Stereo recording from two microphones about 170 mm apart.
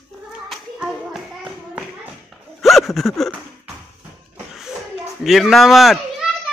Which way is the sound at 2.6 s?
Centre (ahead or behind).